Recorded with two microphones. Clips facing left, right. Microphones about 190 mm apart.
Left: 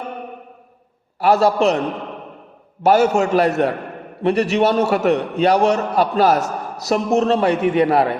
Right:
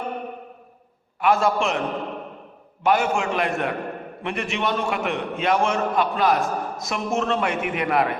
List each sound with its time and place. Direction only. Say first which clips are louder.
1.2 s a man's voice: left 6 dB; 35° left (ahead or behind)
2.8 s a man's voice: left 7 dB; 40° left (ahead or behind)